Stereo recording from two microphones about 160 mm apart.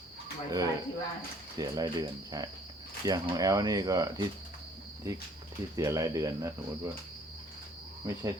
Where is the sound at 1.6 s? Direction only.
25° right (ahead or behind).